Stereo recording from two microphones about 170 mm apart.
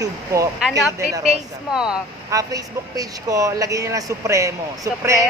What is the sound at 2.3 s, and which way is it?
Speech, 20° right (ahead or behind).